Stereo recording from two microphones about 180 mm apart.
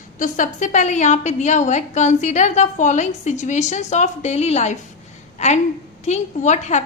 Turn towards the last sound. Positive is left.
turn(degrees=40)  # may be behind; listen again after turning